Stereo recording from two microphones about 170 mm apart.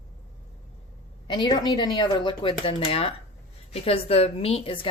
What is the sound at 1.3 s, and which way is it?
A woman's voice, 25° left (ahead or behind).